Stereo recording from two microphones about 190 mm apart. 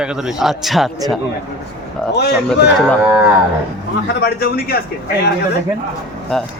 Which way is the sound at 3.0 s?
10° right (ahead or behind).